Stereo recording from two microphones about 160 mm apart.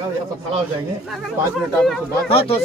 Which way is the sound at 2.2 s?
35° left (ahead or behind).